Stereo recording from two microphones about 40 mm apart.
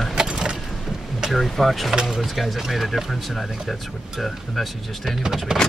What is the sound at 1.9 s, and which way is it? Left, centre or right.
Speech, centre.